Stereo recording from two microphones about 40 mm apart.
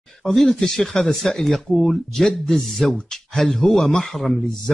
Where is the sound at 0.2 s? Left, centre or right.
Centre.